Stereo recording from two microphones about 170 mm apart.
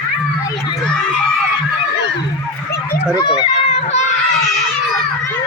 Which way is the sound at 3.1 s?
25° left (ahead or behind).